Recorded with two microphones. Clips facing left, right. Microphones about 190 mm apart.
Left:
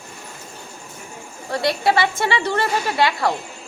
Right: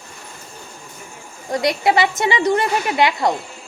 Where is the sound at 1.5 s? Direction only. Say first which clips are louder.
Right 2 dB; 20° right (ahead or behind).